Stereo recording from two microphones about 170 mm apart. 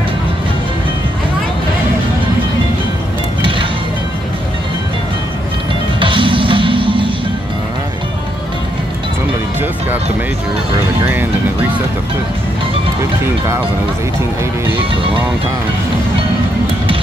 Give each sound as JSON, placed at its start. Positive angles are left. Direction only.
{"t": 5.9, "sound": "music", "side_deg": -30}
{"t": 11.1, "sound": "speech", "side_deg": -10}